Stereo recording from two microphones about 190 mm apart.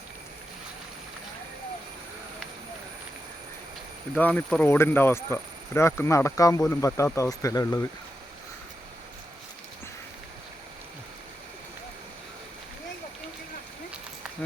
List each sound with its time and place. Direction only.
4.1 s speech: 10° left (ahead or behind)